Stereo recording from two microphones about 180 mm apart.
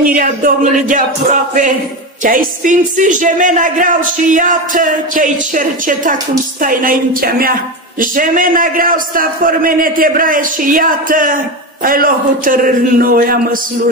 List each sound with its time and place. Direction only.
0.1 s speech: 50° right (ahead or behind)
2.2 s speech: 45° right (ahead or behind)